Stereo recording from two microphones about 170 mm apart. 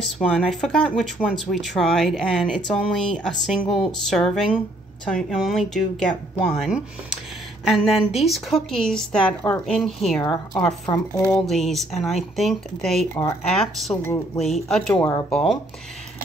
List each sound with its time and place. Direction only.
0.2 s speech: centre (ahead or behind)
10.2 s a woman's voice: 25° left (ahead or behind)
11.3 s speech: centre (ahead or behind)